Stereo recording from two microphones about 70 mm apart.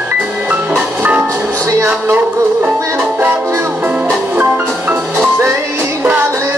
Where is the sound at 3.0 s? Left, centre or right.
Right.